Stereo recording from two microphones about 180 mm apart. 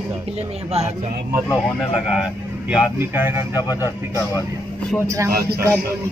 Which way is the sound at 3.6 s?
20° left (ahead or behind).